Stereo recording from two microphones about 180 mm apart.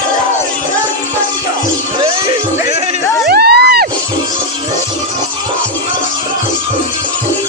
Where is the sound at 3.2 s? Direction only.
65° right (ahead or behind).